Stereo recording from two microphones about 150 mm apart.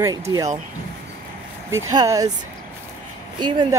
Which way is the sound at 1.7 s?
20° right (ahead or behind).